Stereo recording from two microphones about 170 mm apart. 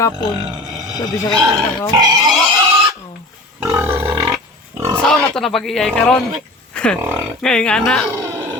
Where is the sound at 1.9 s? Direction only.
20° right (ahead or behind).